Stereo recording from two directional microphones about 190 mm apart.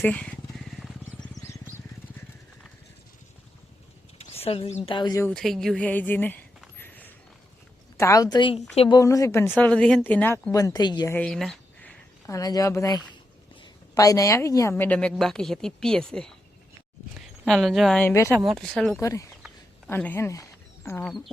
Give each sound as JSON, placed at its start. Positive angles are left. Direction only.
{"t": 0.0, "sound": "speech", "side_deg": 5}
{"t": 4.2, "sound": "a sound", "side_deg": 30}
{"t": 4.9, "sound": "a woman's voice", "side_deg": 25}
{"t": 5.3, "sound": "a woman's voice", "side_deg": 0}
{"t": 6.7, "sound": "a sound", "side_deg": 10}
{"t": 7.9, "sound": "a woman's voice", "side_deg": 15}
{"t": 9.0, "sound": "a woman's voice", "side_deg": 15}
{"t": 11.1, "sound": "a woman's voice", "side_deg": 5}
{"t": 18.0, "sound": "a woman's voice", "side_deg": 15}
{"t": 18.4, "sound": "speech", "side_deg": 0}
{"t": 18.9, "sound": "a woman's voice", "side_deg": 15}